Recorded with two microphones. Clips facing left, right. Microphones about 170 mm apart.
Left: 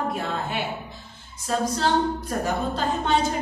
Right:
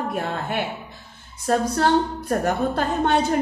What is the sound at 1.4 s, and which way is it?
A woman's voice, 55° right (ahead or behind).